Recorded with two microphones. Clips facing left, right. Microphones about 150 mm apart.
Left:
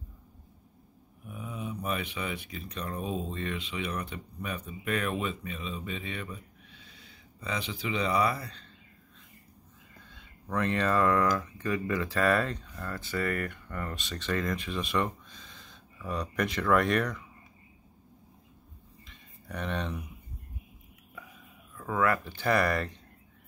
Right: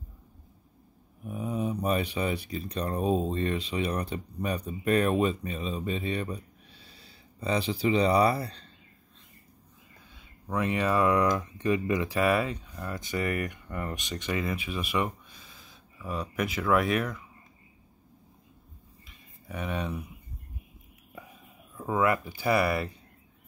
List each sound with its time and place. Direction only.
1.2 s speech: 35° right (ahead or behind)
10.1 s speech: 10° right (ahead or behind)
19.0 s a sound: 5° right (ahead or behind)
21.7 s speech: 20° right (ahead or behind)